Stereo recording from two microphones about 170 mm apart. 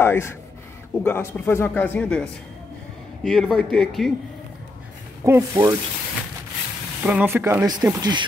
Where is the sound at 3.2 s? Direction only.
Centre (ahead or behind).